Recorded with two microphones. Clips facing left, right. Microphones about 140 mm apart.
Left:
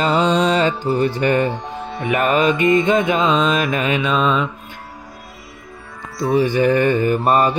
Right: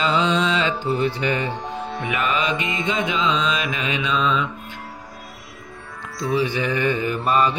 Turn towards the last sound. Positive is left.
turn(degrees=50)  # may be behind; listen again after turning